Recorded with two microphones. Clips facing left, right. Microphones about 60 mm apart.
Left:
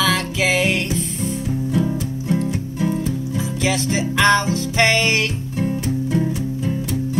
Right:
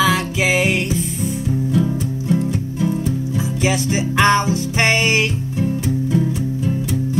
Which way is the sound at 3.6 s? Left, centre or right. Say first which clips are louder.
Right 1 dB; right.